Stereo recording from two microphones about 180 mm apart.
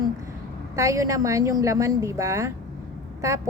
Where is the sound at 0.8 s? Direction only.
15° right (ahead or behind).